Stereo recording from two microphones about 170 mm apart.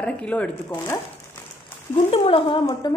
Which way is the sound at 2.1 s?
30° left (ahead or behind).